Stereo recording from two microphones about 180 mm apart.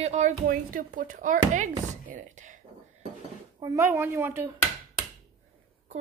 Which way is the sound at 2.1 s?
45° right (ahead or behind).